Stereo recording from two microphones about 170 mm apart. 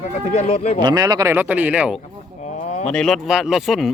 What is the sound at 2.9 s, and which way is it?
Speech, 5° left (ahead or behind).